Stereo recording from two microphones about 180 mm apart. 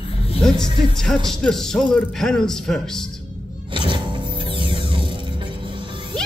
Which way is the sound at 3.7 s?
25° right (ahead or behind).